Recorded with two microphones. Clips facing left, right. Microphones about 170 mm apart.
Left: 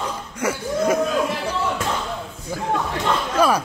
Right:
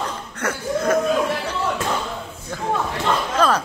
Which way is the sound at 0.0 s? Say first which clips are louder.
Left 1 dB; 10° left (ahead or behind).